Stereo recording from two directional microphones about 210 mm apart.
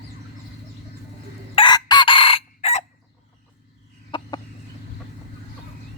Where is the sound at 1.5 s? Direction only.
20° left (ahead or behind).